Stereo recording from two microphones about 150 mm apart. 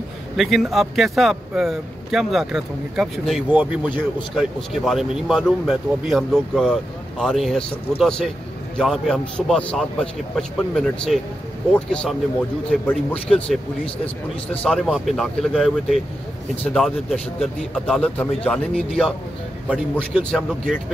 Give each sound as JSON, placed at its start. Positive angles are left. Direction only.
{"t": 0.4, "sound": "speech", "side_deg": 0}